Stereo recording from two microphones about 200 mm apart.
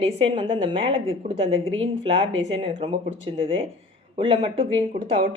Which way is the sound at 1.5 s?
75° right (ahead or behind).